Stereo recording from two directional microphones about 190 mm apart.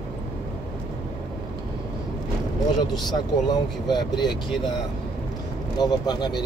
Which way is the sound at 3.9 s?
20° left (ahead or behind).